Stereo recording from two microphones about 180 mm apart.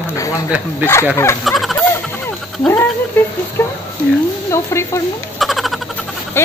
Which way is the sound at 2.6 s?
15° left (ahead or behind).